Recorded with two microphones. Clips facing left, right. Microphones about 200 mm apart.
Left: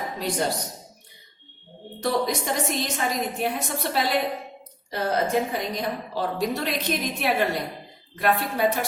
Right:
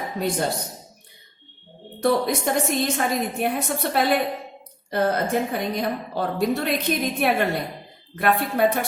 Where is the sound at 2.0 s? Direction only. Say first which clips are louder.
Right 4 dB; 55° right (ahead or behind).